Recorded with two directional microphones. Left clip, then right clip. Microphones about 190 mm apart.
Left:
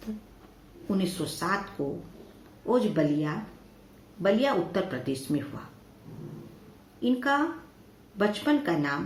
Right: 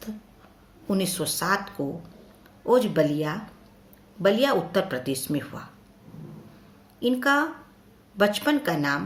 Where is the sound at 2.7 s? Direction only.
55° right (ahead or behind).